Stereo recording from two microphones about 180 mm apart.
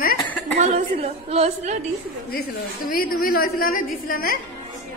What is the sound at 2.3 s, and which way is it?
A woman's voice, 55° left (ahead or behind).